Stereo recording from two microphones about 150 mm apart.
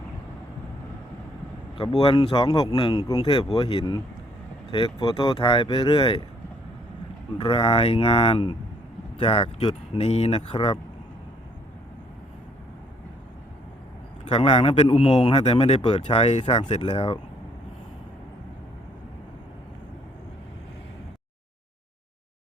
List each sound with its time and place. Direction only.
1.8 s speech: 30° left (ahead or behind)
7.3 s speech: 40° left (ahead or behind)
14.3 s a man's voice: 40° left (ahead or behind)
16.8 s speech: 35° left (ahead or behind)